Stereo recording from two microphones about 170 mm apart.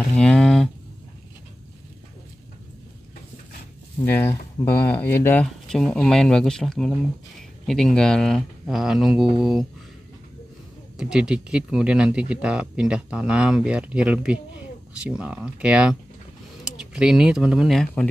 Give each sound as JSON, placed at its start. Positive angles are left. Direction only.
{"t": 0.2, "sound": "a sound", "side_deg": 5}
{"t": 4.0, "sound": "speech", "side_deg": 10}
{"t": 11.0, "sound": "speech", "side_deg": -5}